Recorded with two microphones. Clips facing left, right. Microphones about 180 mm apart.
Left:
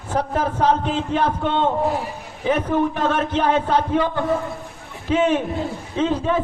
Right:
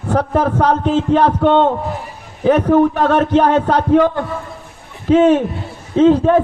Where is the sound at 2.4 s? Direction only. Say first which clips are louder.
Right 8 dB; 50° right (ahead or behind).